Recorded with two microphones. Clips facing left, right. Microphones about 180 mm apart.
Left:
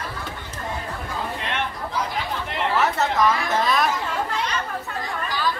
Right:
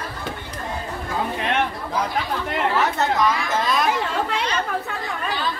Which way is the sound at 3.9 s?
75° right (ahead or behind).